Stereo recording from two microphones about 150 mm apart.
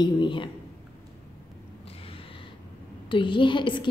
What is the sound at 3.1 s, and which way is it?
Speech, 35° left (ahead or behind).